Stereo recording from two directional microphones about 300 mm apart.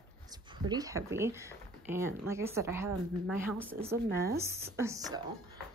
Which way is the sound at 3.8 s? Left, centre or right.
Centre.